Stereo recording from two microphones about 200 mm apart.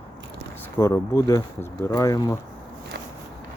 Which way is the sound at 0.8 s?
15° left (ahead or behind).